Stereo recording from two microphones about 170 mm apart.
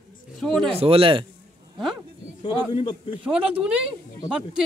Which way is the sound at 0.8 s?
35° right (ahead or behind).